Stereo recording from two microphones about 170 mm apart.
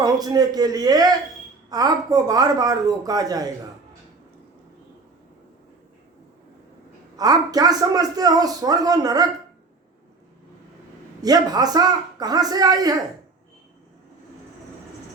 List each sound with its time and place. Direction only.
0.0 s a man's voice: 20° right (ahead or behind)
7.2 s a man's voice: 20° right (ahead or behind)
11.2 s a man's voice: 20° right (ahead or behind)